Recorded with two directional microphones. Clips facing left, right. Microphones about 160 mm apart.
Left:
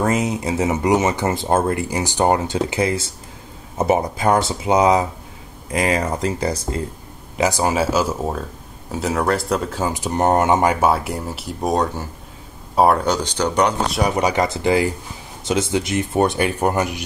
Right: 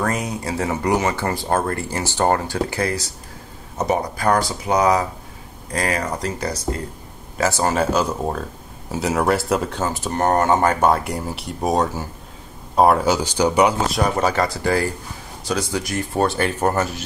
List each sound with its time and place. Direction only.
0.0 s speech: 20° left (ahead or behind)
7.3 s speech: 15° left (ahead or behind); by 14.0 s 5° right (ahead or behind)
14.0 s speech: 15° left (ahead or behind)